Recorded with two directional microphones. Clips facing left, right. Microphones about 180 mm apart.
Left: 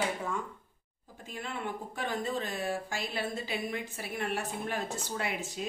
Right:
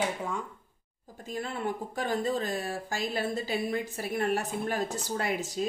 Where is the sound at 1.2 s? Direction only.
40° right (ahead or behind).